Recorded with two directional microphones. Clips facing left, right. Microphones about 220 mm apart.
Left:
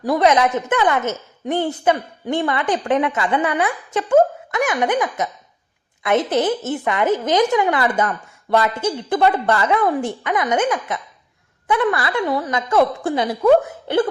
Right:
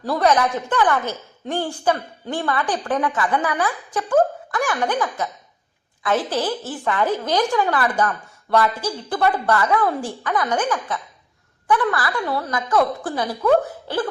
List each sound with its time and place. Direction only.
0.0 s a woman's voice: 20° left (ahead or behind)